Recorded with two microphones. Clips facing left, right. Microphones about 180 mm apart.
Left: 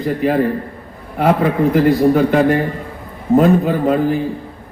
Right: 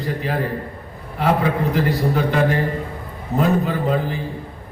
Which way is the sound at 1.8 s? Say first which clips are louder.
Left 8 dB; 55° left (ahead or behind).